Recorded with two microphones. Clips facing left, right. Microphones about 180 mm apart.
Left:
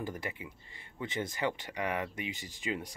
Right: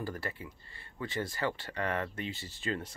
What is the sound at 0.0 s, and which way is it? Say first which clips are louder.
Speech: even; 20° left (ahead or behind).